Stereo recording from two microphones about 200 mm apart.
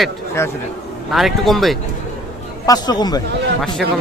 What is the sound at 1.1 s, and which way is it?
Speech, centre (ahead or behind).